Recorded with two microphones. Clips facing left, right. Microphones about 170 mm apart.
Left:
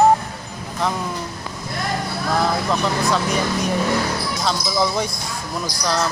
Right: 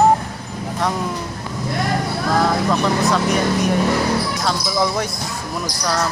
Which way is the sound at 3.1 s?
Centre (ahead or behind).